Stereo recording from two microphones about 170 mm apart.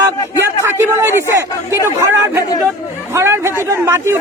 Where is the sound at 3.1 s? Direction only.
15° right (ahead or behind).